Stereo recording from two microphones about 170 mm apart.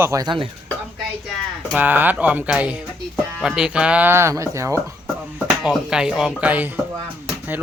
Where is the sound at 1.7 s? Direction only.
10° right (ahead or behind).